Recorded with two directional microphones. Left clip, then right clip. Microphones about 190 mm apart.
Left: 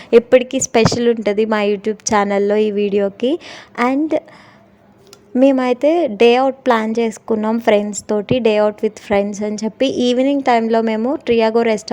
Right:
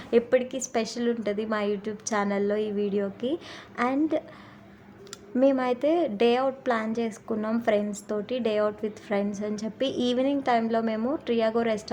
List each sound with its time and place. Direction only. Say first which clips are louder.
0.1 s a woman's voice: left 12 dB; 40° left (ahead or behind)
5.3 s a woman's voice: left 10 dB; 40° left (ahead or behind)